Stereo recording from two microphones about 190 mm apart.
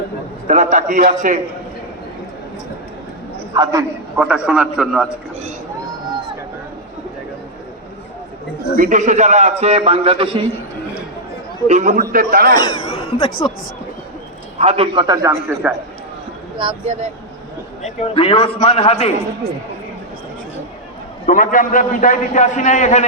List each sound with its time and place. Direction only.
0.4 s a man's voice: 40° right (ahead or behind)
3.5 s a man's voice: 20° right (ahead or behind)
4.4 s a man's voice: 5° right (ahead or behind)
8.7 s a man's voice: 45° right (ahead or behind); by 10.4 s 25° right (ahead or behind)
11.7 s a man's voice: 40° right (ahead or behind)
12.5 s speech: 20° left (ahead or behind)
14.6 s a man's voice: 30° right (ahead or behind); by 15.7 s 10° right (ahead or behind)
16.6 s a man's voice: 30° right (ahead or behind)
18.1 s a man's voice: 30° left (ahead or behind)
21.2 s a man's voice: 45° left (ahead or behind)